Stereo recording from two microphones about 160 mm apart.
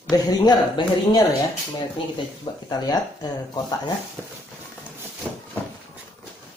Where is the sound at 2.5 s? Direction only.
25° left (ahead or behind).